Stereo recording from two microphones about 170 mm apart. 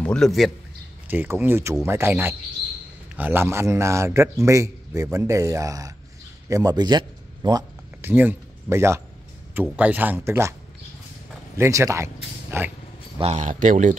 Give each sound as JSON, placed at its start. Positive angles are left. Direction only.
{"t": 0.0, "sound": "a man's voice", "side_deg": 5}
{"t": 1.0, "sound": "a man's voice", "side_deg": -10}
{"t": 8.0, "sound": "a man's voice", "side_deg": -10}
{"t": 11.5, "sound": "speech", "side_deg": -15}
{"t": 13.2, "sound": "speech", "side_deg": -40}